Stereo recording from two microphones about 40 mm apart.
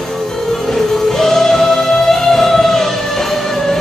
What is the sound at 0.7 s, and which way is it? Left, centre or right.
Music, centre.